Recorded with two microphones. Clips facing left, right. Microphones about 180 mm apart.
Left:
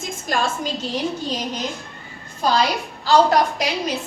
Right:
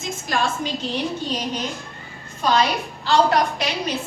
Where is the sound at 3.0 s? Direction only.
40° left (ahead or behind).